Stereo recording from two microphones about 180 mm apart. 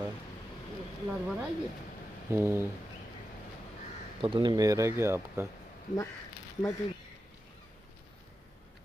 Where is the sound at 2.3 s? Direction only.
15° right (ahead or behind).